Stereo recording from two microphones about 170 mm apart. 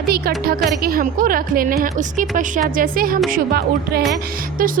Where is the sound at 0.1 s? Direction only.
65° right (ahead or behind).